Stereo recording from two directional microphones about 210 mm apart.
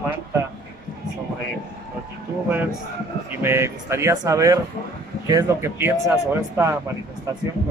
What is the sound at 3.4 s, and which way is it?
Speech, 10° right (ahead or behind).